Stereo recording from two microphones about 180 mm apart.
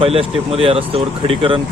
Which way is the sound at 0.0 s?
30° right (ahead or behind).